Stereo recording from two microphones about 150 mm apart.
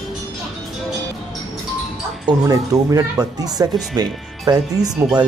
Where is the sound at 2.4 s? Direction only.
25° right (ahead or behind).